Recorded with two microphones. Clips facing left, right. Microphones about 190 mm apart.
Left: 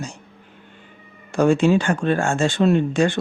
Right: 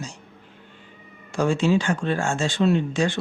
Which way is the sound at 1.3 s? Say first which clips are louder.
Left 5 dB; 55° left (ahead or behind).